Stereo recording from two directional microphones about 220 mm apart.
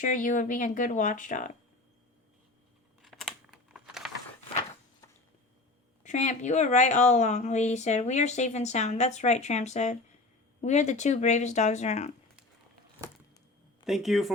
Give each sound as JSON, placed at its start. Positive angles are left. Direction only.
{"t": 0.0, "sound": "speech", "side_deg": 35}
{"t": 3.0, "sound": "computer keyboard", "side_deg": 0}
{"t": 6.0, "sound": "speech", "side_deg": 35}
{"t": 13.8, "sound": "speech", "side_deg": 0}